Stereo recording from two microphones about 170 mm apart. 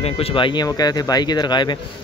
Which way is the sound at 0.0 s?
30° left (ahead or behind).